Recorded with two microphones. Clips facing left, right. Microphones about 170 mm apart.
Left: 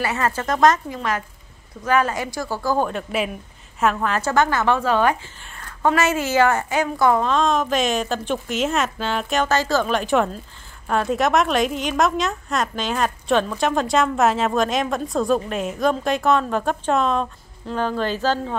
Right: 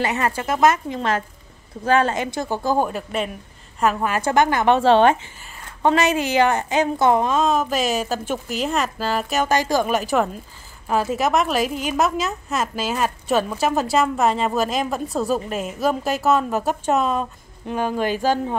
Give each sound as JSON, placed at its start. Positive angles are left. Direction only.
{"t": 0.0, "sound": "a woman's voice", "side_deg": -20}
{"t": 0.8, "sound": "a woman's voice", "side_deg": -30}
{"t": 2.9, "sound": "a woman's voice", "side_deg": -5}
{"t": 7.2, "sound": "a woman's voice", "side_deg": -5}